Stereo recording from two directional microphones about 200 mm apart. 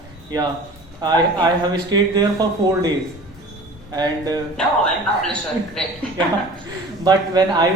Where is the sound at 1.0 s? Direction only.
20° right (ahead or behind).